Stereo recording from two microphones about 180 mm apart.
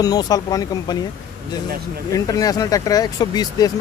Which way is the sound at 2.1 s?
20° left (ahead or behind).